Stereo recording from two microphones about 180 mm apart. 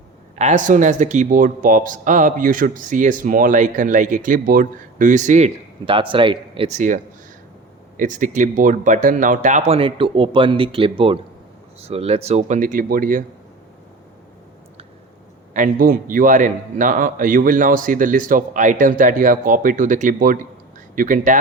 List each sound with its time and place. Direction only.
0.3 s speech: 40° right (ahead or behind)
5.8 s speech: 30° right (ahead or behind); by 13.2 s 50° right (ahead or behind)
15.5 s speech: 50° right (ahead or behind)